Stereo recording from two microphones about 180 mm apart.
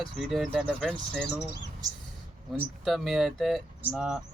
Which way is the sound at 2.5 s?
Centre (ahead or behind).